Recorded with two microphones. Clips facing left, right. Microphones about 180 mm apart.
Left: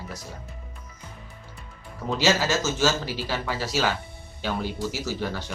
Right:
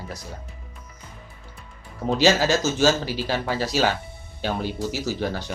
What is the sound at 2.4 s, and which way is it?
Speech, 35° right (ahead or behind).